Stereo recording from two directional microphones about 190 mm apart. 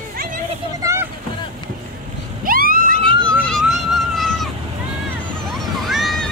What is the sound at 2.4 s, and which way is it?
Vehicle, 50° right (ahead or behind).